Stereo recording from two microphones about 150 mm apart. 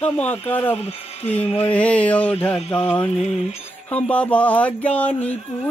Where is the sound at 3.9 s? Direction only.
10° left (ahead or behind).